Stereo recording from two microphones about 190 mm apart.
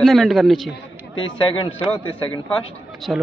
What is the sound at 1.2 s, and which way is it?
Speech, 25° left (ahead or behind).